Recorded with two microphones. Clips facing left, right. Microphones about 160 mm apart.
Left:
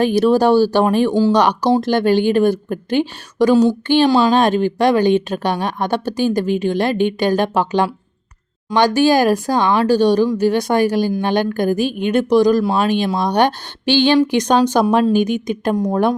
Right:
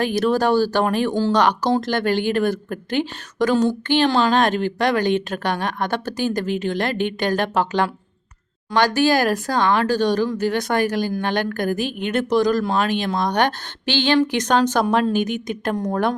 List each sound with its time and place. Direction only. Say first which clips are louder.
0.0 s a woman's voice: left 5 dB; 15° left (ahead or behind)